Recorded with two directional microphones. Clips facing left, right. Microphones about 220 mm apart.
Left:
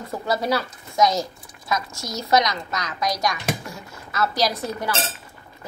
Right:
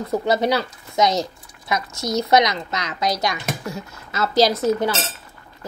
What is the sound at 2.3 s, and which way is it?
Speech, 20° right (ahead or behind).